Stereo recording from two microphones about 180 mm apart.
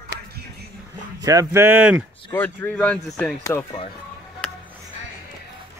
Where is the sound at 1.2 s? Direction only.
20° right (ahead or behind).